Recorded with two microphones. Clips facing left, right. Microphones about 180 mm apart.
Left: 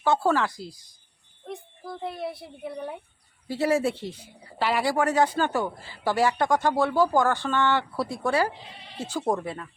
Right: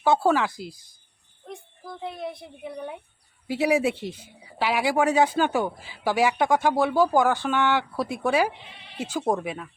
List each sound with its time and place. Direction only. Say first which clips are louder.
0.0 s speech: right 2 dB; 10° right (ahead or behind)
1.5 s a child's voice: left 2 dB; centre (ahead or behind)
3.4 s speech: right 1 dB; 15° right (ahead or behind)
4.6 s speech: right 1 dB; 5° right (ahead or behind)